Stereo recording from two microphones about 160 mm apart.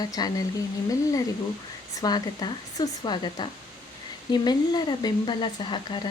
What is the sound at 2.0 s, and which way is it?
Speech, 25° left (ahead or behind).